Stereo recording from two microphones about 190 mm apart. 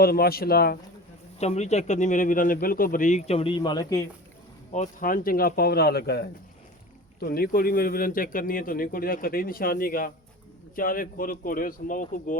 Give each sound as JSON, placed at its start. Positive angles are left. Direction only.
{"t": 0.0, "sound": "speech", "side_deg": 55}
{"t": 1.4, "sound": "speech", "side_deg": 35}
{"t": 4.7, "sound": "speech", "side_deg": 40}